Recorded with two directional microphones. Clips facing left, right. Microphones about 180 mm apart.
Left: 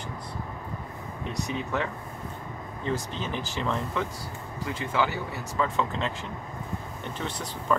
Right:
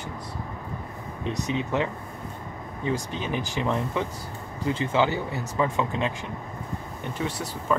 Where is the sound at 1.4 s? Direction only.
20° right (ahead or behind).